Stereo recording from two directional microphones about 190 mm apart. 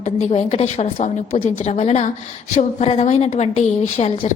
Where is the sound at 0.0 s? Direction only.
35° left (ahead or behind).